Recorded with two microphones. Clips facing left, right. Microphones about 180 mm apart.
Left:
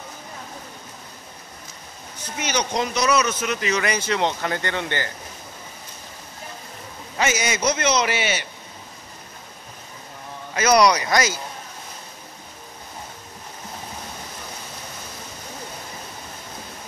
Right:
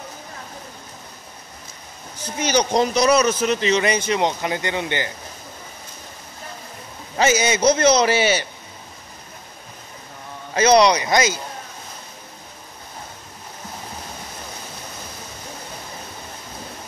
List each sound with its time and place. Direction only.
2.3 s speech: 35° right (ahead or behind); by 5.1 s 15° right (ahead or behind)
7.2 s a man's voice: 30° right (ahead or behind)
10.5 s speech: 25° right (ahead or behind)